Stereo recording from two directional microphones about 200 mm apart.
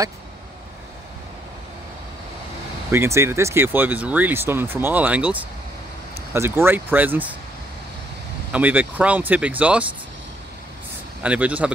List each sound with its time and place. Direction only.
2.9 s speech: 15° right (ahead or behind)
8.5 s speech: 10° right (ahead or behind)
11.2 s speech: 5° right (ahead or behind)